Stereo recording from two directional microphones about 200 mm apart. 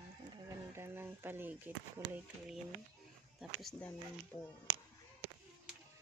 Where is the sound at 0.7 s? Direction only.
10° right (ahead or behind).